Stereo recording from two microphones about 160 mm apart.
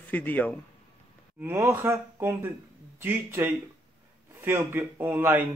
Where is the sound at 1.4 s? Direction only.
15° right (ahead or behind).